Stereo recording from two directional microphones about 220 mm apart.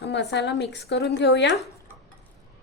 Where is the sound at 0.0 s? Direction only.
50° left (ahead or behind).